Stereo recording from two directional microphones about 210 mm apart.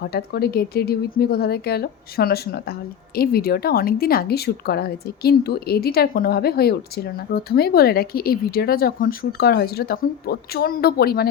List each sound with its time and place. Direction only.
0.0 s a woman's voice: 50° left (ahead or behind)